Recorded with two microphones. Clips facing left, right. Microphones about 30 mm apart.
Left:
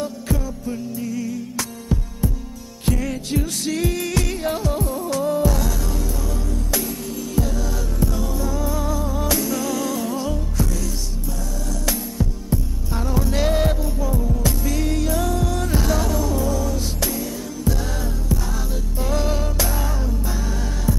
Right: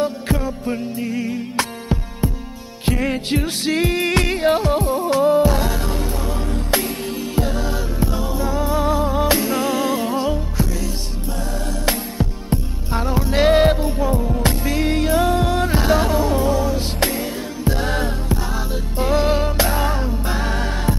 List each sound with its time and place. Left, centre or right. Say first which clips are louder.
0.0 s music: right 5 dB; right
11.8 s music: right 3 dB; right
18.9 s music: right 6 dB; right